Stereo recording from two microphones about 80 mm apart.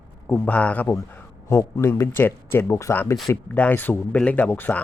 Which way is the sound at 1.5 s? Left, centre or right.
Left.